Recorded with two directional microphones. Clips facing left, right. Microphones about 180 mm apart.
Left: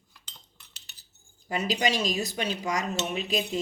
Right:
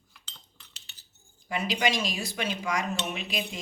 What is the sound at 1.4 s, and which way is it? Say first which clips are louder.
Speech: left 1 dB; 40° left (ahead or behind).